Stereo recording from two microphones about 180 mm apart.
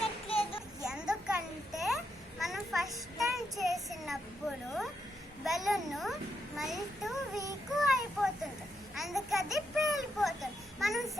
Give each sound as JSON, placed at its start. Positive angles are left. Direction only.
{"t": 0.0, "sound": "child singing", "side_deg": 30}
{"t": 0.9, "sound": "a sound", "side_deg": -5}
{"t": 1.7, "sound": "babbling", "side_deg": 0}
{"t": 2.4, "sound": "child singing", "side_deg": 0}
{"t": 5.5, "sound": "a sound", "side_deg": 0}
{"t": 6.6, "sound": "child singing", "side_deg": 0}